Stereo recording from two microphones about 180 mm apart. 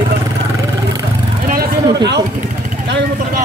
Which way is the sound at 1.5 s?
60° right (ahead or behind).